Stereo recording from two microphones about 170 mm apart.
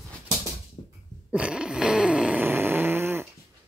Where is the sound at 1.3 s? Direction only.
5° right (ahead or behind).